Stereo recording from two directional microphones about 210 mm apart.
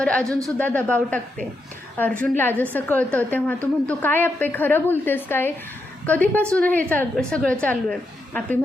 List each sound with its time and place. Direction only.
0.0 s a woman's voice: 5° left (ahead or behind)
2.2 s a woman's voice: 10° left (ahead or behind)